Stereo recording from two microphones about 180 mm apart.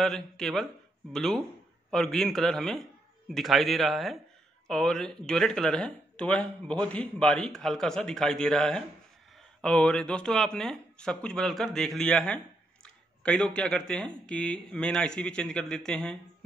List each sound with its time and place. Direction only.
0.0 s speech: centre (ahead or behind)